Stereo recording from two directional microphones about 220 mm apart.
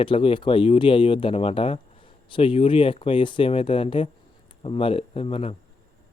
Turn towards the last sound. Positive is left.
turn(degrees=25)  # may be behind; listen again after turning